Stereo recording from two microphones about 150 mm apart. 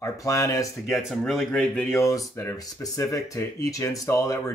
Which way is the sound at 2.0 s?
20° left (ahead or behind).